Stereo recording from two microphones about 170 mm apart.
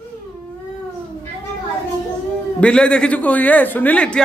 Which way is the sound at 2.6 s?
5° left (ahead or behind).